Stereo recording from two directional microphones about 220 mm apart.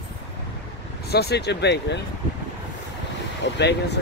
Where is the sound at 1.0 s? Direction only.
45° left (ahead or behind).